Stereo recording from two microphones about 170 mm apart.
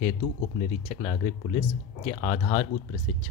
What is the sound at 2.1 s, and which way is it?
Speech, 35° left (ahead or behind).